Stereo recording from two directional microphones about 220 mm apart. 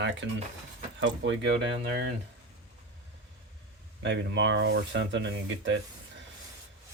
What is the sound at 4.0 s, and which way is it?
Speech, 55° right (ahead or behind).